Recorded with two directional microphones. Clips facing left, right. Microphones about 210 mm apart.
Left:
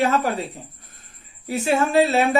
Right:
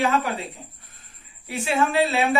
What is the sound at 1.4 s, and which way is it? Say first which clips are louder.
Speech: left 3 dB; 40° left (ahead or behind).